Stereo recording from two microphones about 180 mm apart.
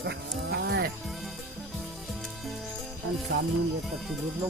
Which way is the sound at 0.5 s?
65° right (ahead or behind).